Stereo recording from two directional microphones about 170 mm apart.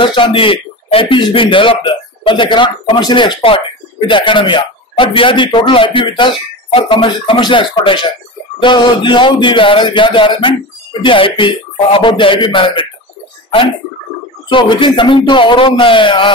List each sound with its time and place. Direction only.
0.0 s speech: 30° left (ahead or behind)
14.5 s speech: 30° left (ahead or behind)